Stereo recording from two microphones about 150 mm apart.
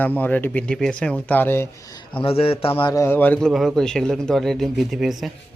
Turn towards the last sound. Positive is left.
turn(degrees=0)  # may be behind; listen again after turning